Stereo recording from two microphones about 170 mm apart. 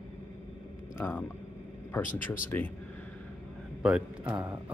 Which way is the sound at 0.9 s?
15° left (ahead or behind).